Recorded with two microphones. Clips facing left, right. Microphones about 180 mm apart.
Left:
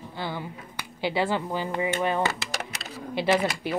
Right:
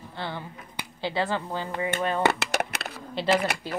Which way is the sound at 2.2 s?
60° right (ahead or behind).